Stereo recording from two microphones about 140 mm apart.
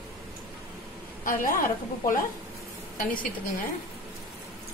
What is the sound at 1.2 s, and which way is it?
A woman's voice, 80° left.